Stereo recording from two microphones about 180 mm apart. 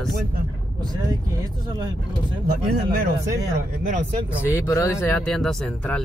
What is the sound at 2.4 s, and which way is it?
Speech, 55° right (ahead or behind).